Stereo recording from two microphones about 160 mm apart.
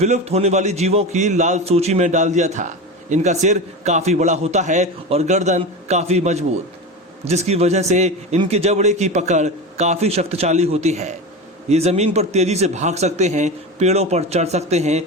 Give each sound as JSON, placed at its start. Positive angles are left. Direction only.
{"t": 0.0, "sound": "a man's voice", "side_deg": -40}